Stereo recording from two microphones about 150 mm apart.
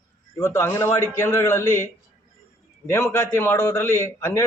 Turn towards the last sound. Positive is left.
turn(degrees=20)  # may be behind; listen again after turning